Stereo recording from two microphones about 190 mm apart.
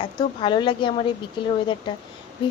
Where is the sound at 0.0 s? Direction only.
25° left (ahead or behind).